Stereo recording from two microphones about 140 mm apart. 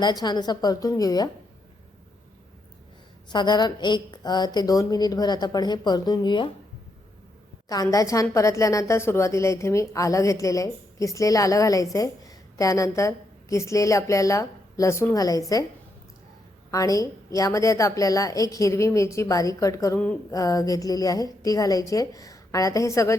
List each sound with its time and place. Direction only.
0.0 s a woman's voice: 30° left (ahead or behind)
3.2 s a woman's voice: 30° left (ahead or behind)
7.7 s a woman's voice: 25° left (ahead or behind)
16.7 s a woman's voice: 25° left (ahead or behind)